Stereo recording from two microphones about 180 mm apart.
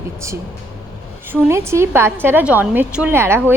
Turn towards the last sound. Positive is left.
turn(degrees=-10)  # may be behind; listen again after turning